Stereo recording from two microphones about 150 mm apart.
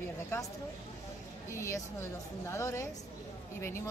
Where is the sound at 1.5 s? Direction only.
20° left (ahead or behind).